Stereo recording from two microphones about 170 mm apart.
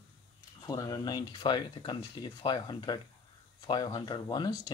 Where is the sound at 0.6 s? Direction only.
25° left (ahead or behind).